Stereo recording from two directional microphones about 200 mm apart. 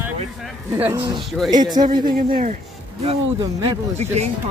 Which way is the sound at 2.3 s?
40° right (ahead or behind).